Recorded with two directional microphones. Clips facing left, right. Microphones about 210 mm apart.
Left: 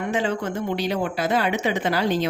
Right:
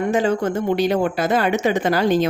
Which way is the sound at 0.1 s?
45° right (ahead or behind).